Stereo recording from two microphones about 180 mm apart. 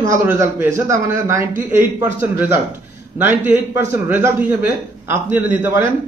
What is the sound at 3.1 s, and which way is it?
A man's voice, 10° right (ahead or behind).